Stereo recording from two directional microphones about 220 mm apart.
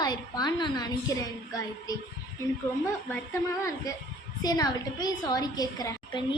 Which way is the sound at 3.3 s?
15° left (ahead or behind).